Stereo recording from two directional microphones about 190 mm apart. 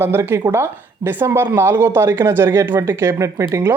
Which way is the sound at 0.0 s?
10° right (ahead or behind).